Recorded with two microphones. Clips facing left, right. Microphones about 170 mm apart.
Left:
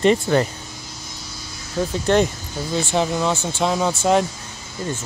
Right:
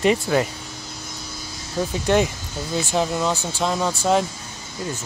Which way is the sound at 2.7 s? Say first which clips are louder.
Left 1 dB; centre (ahead or behind).